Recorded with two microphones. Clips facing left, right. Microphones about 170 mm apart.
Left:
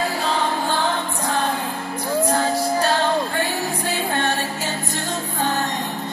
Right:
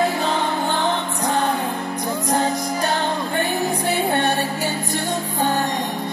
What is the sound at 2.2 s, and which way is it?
Music, 20° right (ahead or behind).